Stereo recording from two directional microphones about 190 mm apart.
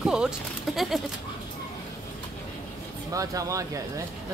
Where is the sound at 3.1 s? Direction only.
15° right (ahead or behind).